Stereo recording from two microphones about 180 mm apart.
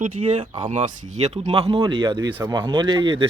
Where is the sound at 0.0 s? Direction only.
40° right (ahead or behind).